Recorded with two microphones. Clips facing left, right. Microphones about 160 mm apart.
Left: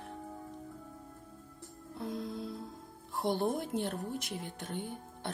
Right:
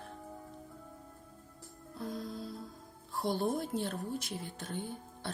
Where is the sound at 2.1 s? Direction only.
Centre (ahead or behind).